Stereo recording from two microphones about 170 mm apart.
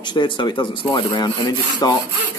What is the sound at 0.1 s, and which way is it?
Rub, 25° left (ahead or behind).